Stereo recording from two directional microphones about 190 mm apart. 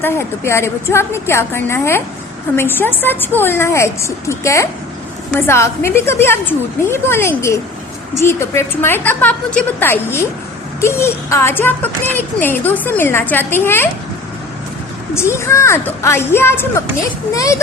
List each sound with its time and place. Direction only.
0.0 s a woman's voice: 10° left (ahead or behind)
15.1 s a woman's voice: 15° left (ahead or behind)